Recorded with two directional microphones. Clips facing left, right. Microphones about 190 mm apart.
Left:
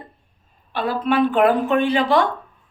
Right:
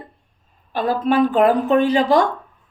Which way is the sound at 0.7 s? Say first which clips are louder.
Right 2 dB; 45° right (ahead or behind).